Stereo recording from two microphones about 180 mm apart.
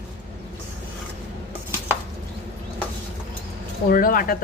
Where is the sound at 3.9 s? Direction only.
50° left (ahead or behind).